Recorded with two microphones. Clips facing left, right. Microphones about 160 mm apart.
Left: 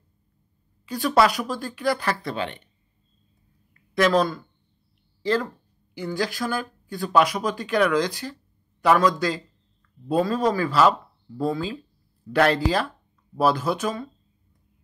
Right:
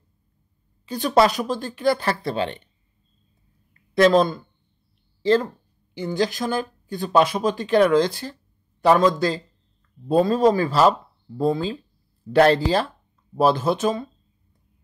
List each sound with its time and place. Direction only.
0.8 s speech: 25° right (ahead or behind)
3.9 s speech: 25° right (ahead or behind)